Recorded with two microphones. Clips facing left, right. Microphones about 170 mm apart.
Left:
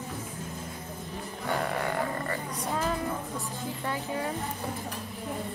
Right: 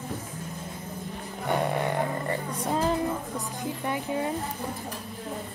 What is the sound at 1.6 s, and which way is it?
A woman's voice, 20° right (ahead or behind).